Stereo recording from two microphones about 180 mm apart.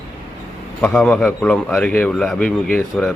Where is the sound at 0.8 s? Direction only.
5° left (ahead or behind).